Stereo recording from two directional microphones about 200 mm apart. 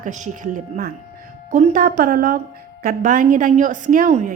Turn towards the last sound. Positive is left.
turn(degrees=-40)  # may be behind; listen again after turning